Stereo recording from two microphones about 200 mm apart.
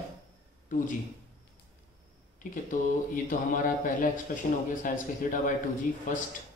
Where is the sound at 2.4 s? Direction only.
40° left (ahead or behind).